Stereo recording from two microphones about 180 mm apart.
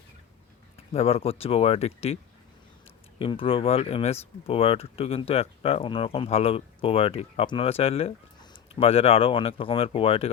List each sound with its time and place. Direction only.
0.9 s speech: 35° left (ahead or behind)
3.2 s speech: 30° left (ahead or behind)